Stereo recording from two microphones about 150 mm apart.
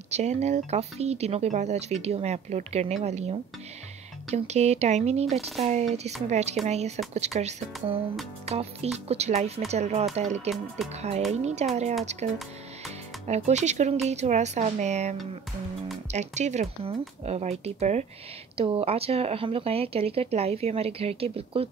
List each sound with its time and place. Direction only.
0.1 s speech: 50° right (ahead or behind)
9.0 s speech: 45° right (ahead or behind)
13.3 s speech: 50° right (ahead or behind)